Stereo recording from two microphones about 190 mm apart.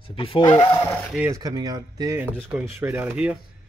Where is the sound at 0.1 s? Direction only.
30° left (ahead or behind).